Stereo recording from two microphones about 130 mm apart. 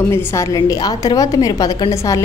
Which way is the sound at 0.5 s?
30° left (ahead or behind).